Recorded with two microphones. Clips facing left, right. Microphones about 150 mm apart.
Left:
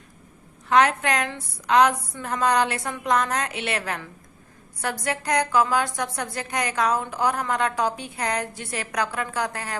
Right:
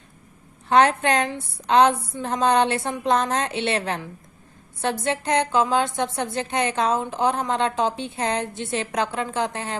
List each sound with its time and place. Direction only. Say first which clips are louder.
0.7 s a woman's voice: right 2 dB; 30° right (ahead or behind)